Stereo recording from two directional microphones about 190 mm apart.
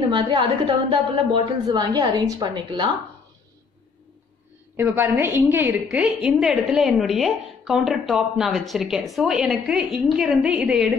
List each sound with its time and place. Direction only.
0.1 s a woman's voice: 25° right (ahead or behind)
4.7 s a woman's voice: 10° right (ahead or behind)